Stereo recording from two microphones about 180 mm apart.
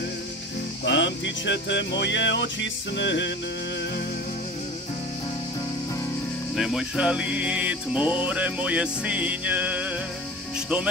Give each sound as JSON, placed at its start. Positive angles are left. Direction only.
{"t": 0.8, "sound": "music", "side_deg": 80}
{"t": 6.5, "sound": "music", "side_deg": 0}